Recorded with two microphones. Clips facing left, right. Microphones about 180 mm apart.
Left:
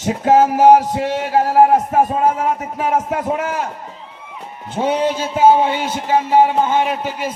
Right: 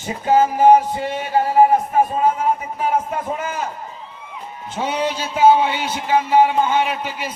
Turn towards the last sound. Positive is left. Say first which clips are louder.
# left 3 dB
turn(degrees=45)  # may be behind; listen again after turning